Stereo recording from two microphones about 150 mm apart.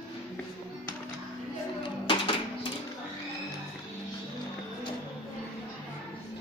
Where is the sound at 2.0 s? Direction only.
35° left (ahead or behind).